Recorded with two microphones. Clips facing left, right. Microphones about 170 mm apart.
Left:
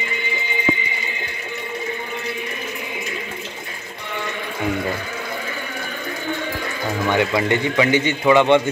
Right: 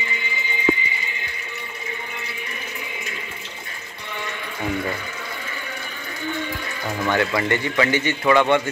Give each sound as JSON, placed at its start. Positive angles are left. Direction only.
{"t": 7.1, "sound": "a man's voice", "side_deg": 20}